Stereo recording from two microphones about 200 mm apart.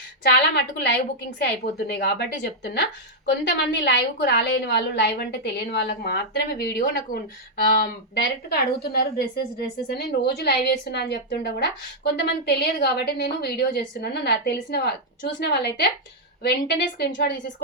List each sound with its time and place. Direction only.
0.2 s a woman's voice: 55° left (ahead or behind)